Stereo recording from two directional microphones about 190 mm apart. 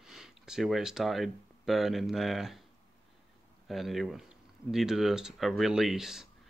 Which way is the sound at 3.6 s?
Centre (ahead or behind).